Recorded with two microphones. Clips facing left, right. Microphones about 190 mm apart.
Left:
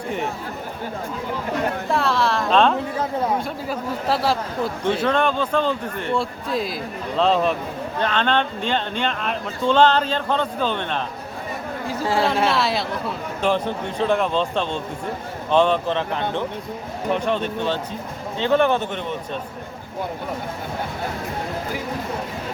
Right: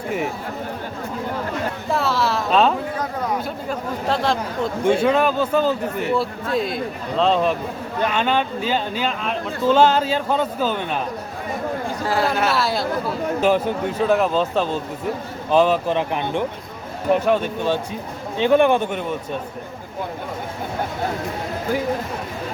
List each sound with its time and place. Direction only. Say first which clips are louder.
1.9 s a woman's voice: right 1 dB; centre (ahead or behind)
3.4 s speech: even; 5° left (ahead or behind)
5.0 s speech: right 2 dB; 5° right (ahead or behind)
12.0 s a woman's voice: left 1 dB; 25° left (ahead or behind)
12.5 s speech: right 1 dB; centre (ahead or behind)